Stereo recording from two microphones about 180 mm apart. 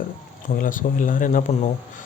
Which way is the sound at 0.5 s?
50° left (ahead or behind).